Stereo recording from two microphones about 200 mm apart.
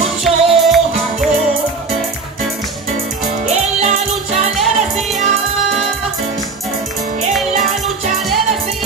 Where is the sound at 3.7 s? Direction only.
35° right (ahead or behind).